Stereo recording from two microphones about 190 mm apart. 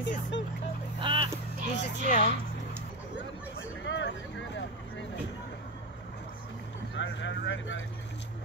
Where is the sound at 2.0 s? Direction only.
40° left (ahead or behind).